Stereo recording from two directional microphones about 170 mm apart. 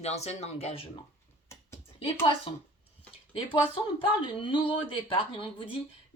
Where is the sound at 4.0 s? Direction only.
30° left (ahead or behind).